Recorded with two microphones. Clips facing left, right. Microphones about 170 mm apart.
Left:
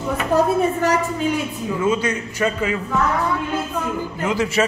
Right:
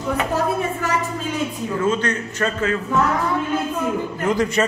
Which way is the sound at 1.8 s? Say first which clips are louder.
Left 1 dB; 10° left (ahead or behind).